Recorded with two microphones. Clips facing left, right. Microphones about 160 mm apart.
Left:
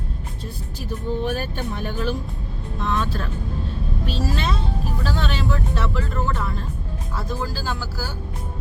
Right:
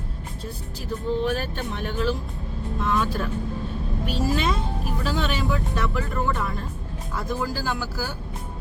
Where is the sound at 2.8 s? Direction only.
10° right (ahead or behind).